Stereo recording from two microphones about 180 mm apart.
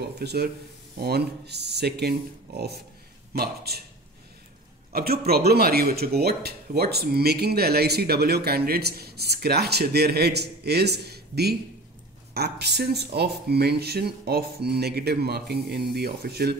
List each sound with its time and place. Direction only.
0.0 s speech: 65° right (ahead or behind)
4.9 s speech: 60° right (ahead or behind)